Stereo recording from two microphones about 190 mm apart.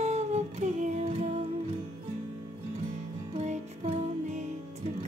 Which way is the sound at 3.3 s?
35° right (ahead or behind).